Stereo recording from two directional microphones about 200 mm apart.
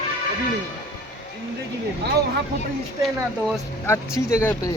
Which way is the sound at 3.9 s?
15° left (ahead or behind).